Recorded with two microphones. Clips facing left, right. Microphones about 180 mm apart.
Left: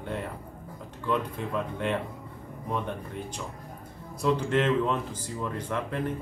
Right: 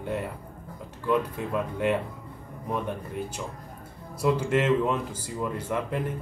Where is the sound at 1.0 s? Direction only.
5° right (ahead or behind).